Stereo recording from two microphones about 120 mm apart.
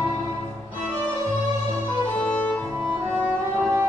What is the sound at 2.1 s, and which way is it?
Music, 10° left (ahead or behind).